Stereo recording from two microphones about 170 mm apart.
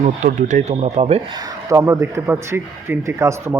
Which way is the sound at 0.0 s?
45° right (ahead or behind).